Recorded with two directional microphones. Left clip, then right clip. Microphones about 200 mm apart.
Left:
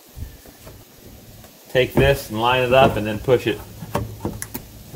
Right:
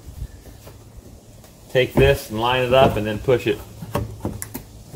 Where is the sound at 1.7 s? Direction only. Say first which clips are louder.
Even; 10° left (ahead or behind).